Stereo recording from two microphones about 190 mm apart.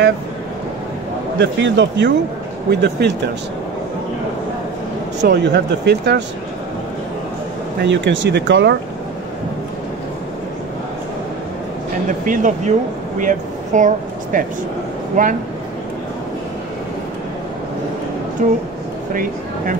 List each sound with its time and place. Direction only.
1.4 s speech: 70° right (ahead or behind)
5.2 s speech: 60° right (ahead or behind)
7.8 s speech: 70° right (ahead or behind)
12.3 s speech: 40° right (ahead or behind)
18.4 s a woman's voice: 40° right (ahead or behind)